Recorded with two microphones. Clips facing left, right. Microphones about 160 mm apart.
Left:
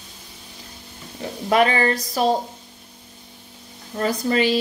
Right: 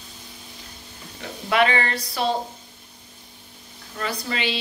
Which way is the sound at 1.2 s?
40° left (ahead or behind).